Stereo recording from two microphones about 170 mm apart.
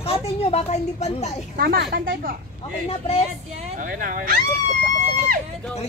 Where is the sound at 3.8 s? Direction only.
55° right (ahead or behind).